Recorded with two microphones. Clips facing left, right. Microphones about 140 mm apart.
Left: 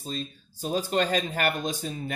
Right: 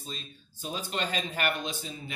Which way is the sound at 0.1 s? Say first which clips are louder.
Left 11 dB; 40° left (ahead or behind).